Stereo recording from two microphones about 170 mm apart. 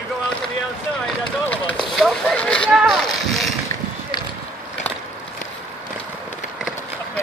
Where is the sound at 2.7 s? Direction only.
Centre (ahead or behind).